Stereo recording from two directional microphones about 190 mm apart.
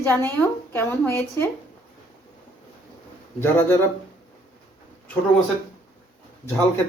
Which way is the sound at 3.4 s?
10° left (ahead or behind).